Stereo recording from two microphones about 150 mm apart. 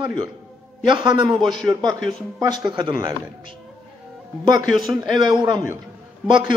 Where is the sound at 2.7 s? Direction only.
30° right (ahead or behind).